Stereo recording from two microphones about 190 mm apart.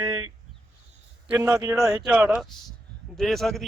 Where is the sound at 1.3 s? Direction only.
5° right (ahead or behind).